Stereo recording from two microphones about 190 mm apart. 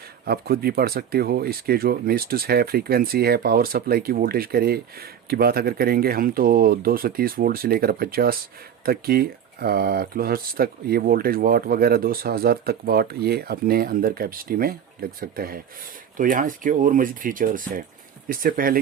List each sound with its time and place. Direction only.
0.3 s speech: 55° right (ahead or behind)